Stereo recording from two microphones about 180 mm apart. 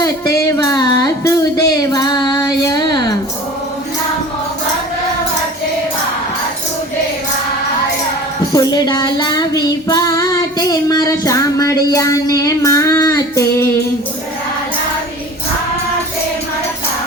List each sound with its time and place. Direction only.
0.0 s music: 15° left (ahead or behind)
8.5 s child singing: 20° left (ahead or behind)